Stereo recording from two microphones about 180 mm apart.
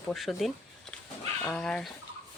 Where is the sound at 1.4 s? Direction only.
5° left (ahead or behind).